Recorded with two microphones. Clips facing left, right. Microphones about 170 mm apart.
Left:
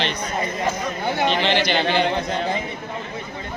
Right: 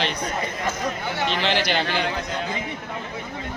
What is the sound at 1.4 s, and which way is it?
Speech, 5° right (ahead or behind).